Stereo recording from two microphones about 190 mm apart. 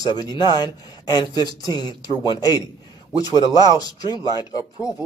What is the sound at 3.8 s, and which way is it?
Speech, 20° left (ahead or behind).